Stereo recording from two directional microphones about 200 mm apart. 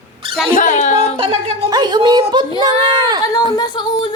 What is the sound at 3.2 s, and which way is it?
Speech, 20° left (ahead or behind).